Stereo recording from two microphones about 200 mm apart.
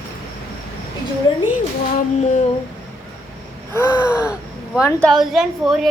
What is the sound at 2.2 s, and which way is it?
Speech, 35° left (ahead or behind).